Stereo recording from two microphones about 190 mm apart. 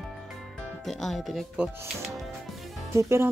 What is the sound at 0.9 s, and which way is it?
Speech, centre (ahead or behind).